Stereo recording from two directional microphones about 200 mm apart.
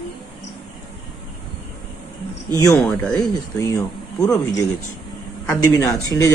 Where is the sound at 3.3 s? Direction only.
15° left (ahead or behind).